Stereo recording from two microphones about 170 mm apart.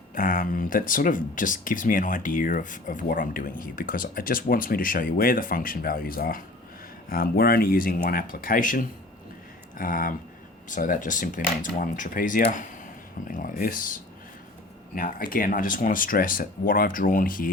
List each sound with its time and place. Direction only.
0.1 s speech: 55° left (ahead or behind)